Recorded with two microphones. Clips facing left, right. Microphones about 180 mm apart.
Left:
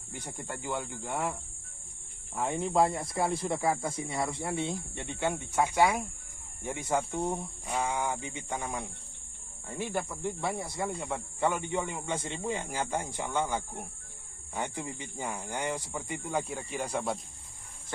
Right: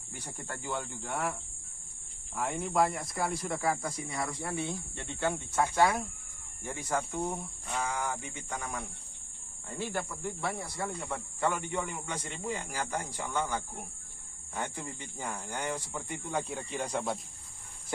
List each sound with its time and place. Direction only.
0.3 s speech: 20° left (ahead or behind)
16.3 s speech: 5° left (ahead or behind)